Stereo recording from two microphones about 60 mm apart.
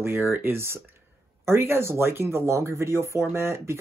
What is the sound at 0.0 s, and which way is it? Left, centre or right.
Speech, right.